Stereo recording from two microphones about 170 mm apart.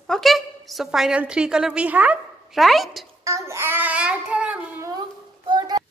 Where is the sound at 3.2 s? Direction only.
15° right (ahead or behind).